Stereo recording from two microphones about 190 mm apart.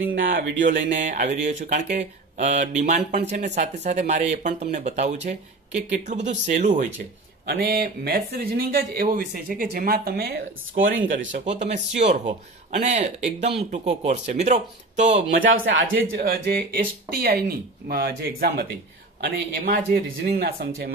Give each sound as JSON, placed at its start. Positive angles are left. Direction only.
{"t": 0.0, "sound": "speech", "side_deg": -90}
{"t": 0.5, "sound": "music", "side_deg": -70}
{"t": 0.8, "sound": "speech", "side_deg": -40}
{"t": 7.4, "sound": "speech", "side_deg": -55}
{"t": 10.8, "sound": "speech", "side_deg": -80}
{"t": 11.3, "sound": "speech", "side_deg": -35}
{"t": 15.4, "sound": "speech", "side_deg": -85}
{"t": 16.3, "sound": "speech", "side_deg": -50}